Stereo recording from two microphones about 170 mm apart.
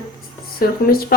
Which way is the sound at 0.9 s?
60° left (ahead or behind).